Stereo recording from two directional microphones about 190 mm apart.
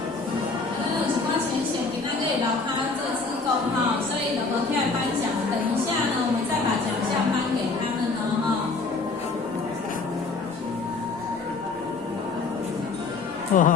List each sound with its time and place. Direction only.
13.5 s speech: 45° left (ahead or behind)